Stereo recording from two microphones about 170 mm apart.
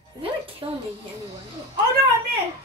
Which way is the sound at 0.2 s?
35° right (ahead or behind).